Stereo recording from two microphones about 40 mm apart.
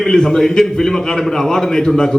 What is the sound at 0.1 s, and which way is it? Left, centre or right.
A man's voice, centre.